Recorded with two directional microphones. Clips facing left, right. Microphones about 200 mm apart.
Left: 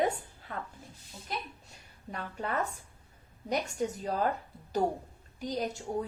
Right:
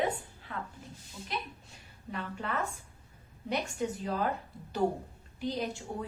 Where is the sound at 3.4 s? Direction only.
40° left (ahead or behind).